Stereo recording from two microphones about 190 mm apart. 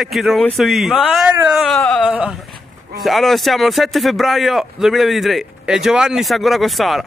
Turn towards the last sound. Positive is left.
turn(degrees=0)  # may be behind; listen again after turning